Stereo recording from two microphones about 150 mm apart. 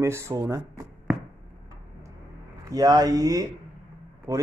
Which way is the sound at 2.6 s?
25° right (ahead or behind).